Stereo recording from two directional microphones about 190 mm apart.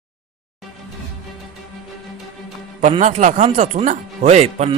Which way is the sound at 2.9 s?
35° right (ahead or behind).